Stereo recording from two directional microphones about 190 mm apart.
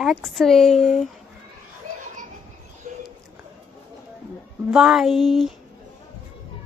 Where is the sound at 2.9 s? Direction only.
35° right (ahead or behind).